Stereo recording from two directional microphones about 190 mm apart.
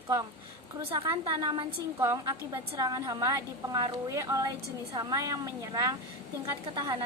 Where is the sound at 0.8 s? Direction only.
25° right (ahead or behind).